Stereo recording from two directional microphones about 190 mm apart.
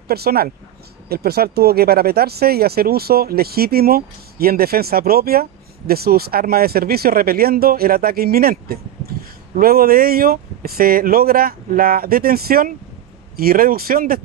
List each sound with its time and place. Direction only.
0.1 s speech: 55° right (ahead or behind)